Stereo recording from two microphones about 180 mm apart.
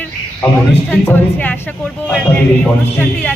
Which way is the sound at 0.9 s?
10° left (ahead or behind).